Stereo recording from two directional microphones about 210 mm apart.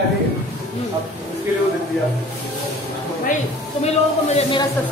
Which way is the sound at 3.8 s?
30° left (ahead or behind).